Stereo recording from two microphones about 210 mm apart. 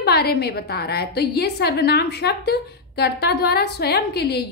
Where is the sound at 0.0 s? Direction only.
50° left (ahead or behind).